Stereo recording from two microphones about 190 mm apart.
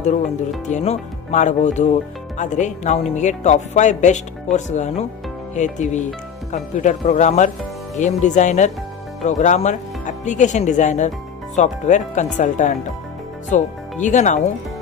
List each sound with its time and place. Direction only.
0.7 s speech: 40° left (ahead or behind)